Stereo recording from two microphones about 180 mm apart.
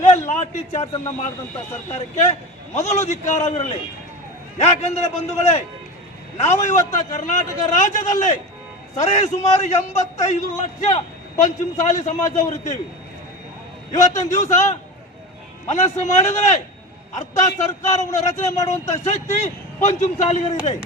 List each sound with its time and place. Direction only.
0.0 s a man's voice: 40° left (ahead or behind)
1.9 s a man's voice: 40° left (ahead or behind)
13.9 s a man's voice: 40° left (ahead or behind)
18.5 s speech: 15° left (ahead or behind)
18.9 s a man's voice: 40° left (ahead or behind)